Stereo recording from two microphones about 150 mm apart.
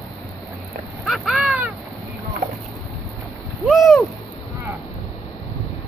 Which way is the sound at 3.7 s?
Centre (ahead or behind).